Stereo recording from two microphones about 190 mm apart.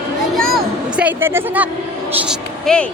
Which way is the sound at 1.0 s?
10° right (ahead or behind).